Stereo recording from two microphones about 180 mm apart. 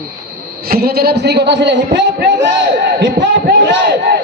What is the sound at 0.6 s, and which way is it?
A man's voice, 55° right (ahead or behind).